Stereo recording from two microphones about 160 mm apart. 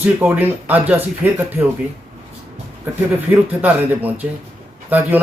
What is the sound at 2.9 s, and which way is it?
Speech, 10° right (ahead or behind).